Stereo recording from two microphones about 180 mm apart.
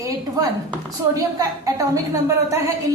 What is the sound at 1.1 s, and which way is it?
A woman's voice, 20° right (ahead or behind).